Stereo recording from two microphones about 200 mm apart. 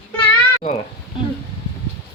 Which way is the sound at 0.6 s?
45° left (ahead or behind).